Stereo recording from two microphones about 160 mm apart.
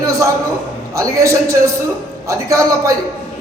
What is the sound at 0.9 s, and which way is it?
A man's voice, 20° right (ahead or behind).